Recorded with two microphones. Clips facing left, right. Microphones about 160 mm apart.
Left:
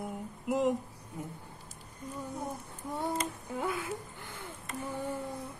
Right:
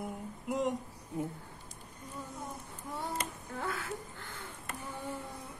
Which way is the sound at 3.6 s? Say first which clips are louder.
Left 3 dB; 15° left (ahead or behind).